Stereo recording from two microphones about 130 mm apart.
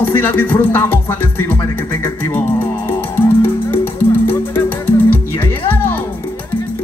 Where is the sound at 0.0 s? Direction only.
15° left (ahead or behind).